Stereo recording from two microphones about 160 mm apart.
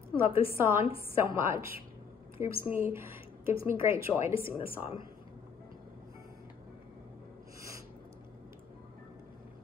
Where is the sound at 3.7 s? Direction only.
15° right (ahead or behind).